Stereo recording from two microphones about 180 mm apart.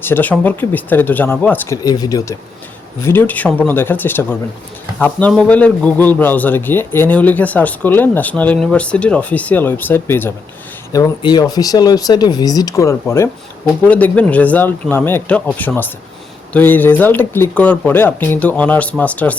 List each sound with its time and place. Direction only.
0.0 s a man's voice: 10° left (ahead or behind)
1.8 s a man's voice: 20° left (ahead or behind)
10.9 s a man's voice: 20° left (ahead or behind)